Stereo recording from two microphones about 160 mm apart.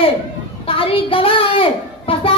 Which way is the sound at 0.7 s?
35° left (ahead or behind).